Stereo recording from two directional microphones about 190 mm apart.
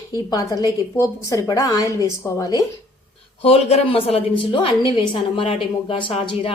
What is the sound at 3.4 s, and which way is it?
A woman's voice, 30° left (ahead or behind).